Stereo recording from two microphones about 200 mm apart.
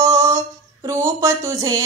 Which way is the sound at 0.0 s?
15° right (ahead or behind).